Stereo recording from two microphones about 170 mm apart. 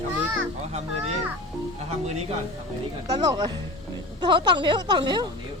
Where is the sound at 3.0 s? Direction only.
25° right (ahead or behind).